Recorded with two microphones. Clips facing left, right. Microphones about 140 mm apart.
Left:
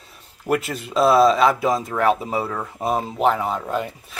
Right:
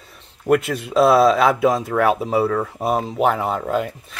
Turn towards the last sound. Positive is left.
turn(degrees=0)  # may be behind; listen again after turning